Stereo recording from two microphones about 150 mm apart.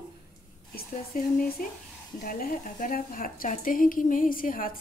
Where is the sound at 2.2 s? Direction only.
70° left (ahead or behind).